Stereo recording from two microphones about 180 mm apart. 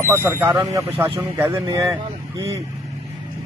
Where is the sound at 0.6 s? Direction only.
25° right (ahead or behind).